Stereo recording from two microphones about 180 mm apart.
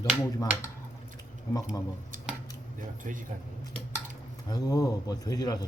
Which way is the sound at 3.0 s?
45° right (ahead or behind).